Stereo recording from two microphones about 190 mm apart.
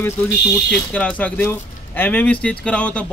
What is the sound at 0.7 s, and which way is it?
Speech, 5° left (ahead or behind).